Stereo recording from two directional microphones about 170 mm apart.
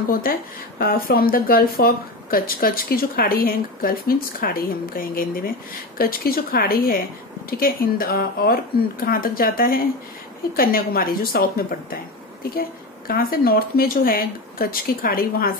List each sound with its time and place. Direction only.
0.1 s speech: 60° left (ahead or behind)